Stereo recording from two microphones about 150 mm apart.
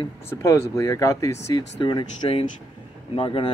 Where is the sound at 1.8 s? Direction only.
35° left (ahead or behind).